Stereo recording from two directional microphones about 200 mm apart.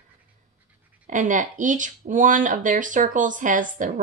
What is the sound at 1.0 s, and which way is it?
Speech, 40° right (ahead or behind).